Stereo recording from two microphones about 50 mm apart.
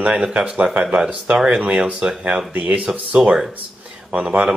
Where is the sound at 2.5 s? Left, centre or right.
Right.